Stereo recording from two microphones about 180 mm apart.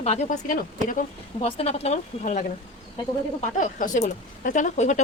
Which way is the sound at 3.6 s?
45° left (ahead or behind).